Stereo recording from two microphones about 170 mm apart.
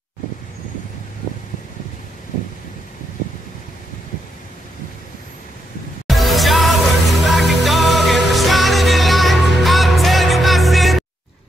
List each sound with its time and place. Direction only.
6.0 s music: centre (ahead or behind)